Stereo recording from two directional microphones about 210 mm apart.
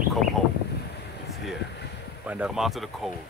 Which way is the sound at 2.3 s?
5° right (ahead or behind).